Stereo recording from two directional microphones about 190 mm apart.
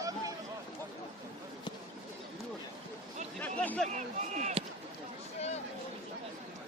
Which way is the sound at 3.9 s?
40° right (ahead or behind).